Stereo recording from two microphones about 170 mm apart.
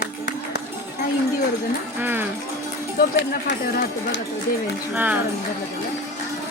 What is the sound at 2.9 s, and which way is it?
Speech, 80° left.